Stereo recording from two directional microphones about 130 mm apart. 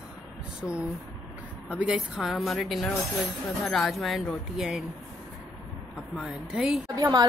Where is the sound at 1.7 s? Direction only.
10° right (ahead or behind).